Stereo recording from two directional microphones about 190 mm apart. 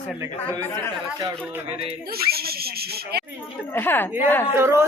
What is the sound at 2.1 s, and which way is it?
Speech, 55° right (ahead or behind).